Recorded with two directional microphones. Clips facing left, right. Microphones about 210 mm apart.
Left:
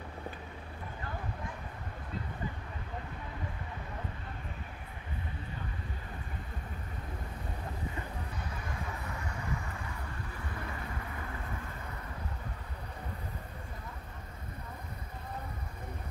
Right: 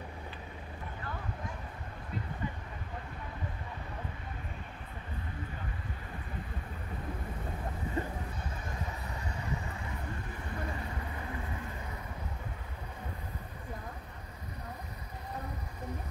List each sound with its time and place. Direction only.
8.0 s vehicle: 35° right (ahead or behind)